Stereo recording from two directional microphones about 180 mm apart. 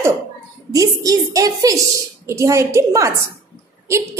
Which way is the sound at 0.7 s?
20° right (ahead or behind).